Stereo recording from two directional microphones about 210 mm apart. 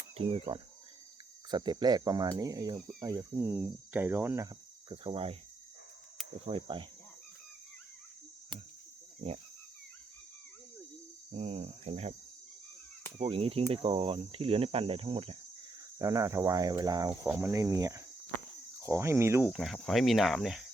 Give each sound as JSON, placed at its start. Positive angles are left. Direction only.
{"t": 0.2, "sound": "speech", "side_deg": -25}
{"t": 4.9, "sound": "speech", "side_deg": -25}
{"t": 6.4, "sound": "speech", "side_deg": -25}
{"t": 11.3, "sound": "speech", "side_deg": -30}
{"t": 13.1, "sound": "speech", "side_deg": -25}
{"t": 16.0, "sound": "speech", "side_deg": -15}